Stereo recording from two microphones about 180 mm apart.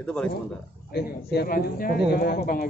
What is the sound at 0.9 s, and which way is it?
A man's voice, 60° left (ahead or behind).